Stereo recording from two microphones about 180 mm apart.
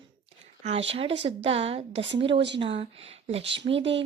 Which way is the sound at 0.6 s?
35° right (ahead or behind).